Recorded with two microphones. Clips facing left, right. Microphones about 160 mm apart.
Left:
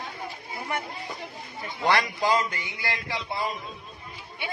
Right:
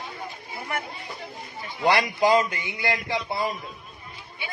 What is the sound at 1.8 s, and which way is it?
A man's voice, 15° right (ahead or behind).